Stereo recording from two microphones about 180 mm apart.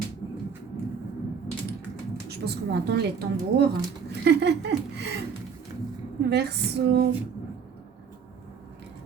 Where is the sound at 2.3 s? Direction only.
65° right (ahead or behind).